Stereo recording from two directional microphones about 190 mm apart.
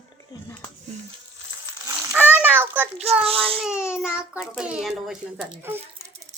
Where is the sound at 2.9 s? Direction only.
35° right (ahead or behind).